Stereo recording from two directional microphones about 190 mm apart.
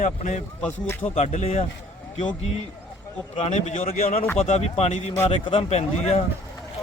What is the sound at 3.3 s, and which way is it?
A man's voice, 35° left (ahead or behind).